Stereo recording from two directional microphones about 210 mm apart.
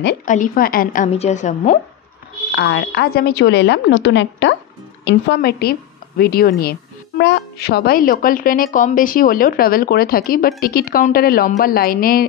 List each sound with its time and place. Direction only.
0.0 s a woman's voice: 45° left (ahead or behind)
2.5 s a woman's voice: 55° left (ahead or behind)